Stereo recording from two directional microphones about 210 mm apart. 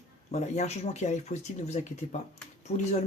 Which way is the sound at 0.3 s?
30° left (ahead or behind).